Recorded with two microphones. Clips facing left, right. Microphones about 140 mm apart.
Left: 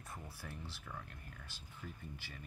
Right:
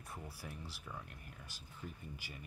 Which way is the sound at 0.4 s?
10° right (ahead or behind).